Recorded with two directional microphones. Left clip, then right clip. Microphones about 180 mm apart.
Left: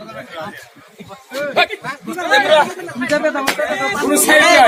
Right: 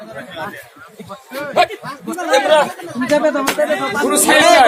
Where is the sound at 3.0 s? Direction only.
40° right (ahead or behind).